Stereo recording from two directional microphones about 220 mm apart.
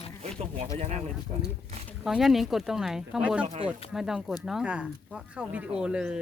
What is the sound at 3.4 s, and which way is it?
Speech, 30° right (ahead or behind).